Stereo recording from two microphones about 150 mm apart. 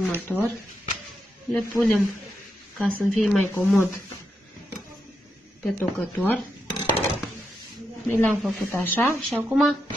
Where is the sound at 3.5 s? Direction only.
15° left (ahead or behind).